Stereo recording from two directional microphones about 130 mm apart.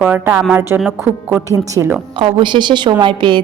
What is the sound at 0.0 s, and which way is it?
A woman's voice, 15° right (ahead or behind).